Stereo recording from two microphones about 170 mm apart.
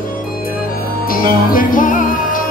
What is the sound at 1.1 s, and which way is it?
Music, 60° left (ahead or behind).